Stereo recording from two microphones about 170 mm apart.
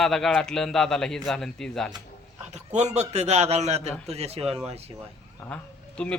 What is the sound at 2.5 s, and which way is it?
A man's voice, 45° right (ahead or behind).